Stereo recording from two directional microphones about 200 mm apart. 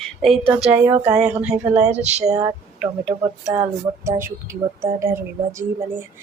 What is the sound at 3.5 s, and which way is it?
Speech, 15° right (ahead or behind).